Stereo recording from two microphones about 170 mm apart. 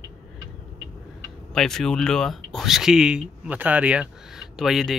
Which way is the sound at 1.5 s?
Centre (ahead or behind).